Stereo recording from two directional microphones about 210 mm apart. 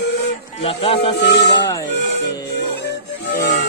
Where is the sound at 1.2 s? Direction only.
55° left (ahead or behind).